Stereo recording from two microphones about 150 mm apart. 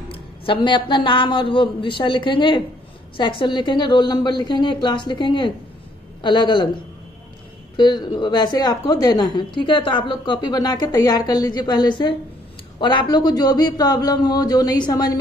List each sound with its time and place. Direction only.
0.1 s a man's voice: 35° left (ahead or behind)
7.7 s a woman's voice: 30° left (ahead or behind)